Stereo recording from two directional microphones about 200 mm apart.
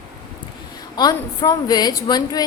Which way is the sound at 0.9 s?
20° left (ahead or behind).